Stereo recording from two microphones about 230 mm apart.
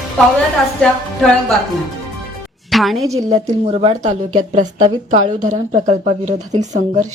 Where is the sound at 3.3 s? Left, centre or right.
Right.